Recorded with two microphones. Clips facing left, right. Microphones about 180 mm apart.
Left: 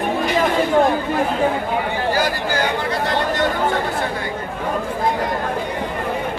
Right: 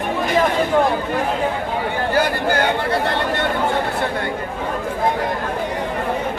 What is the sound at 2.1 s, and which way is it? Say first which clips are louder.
Speech: right 2 dB; 60° right (ahead or behind).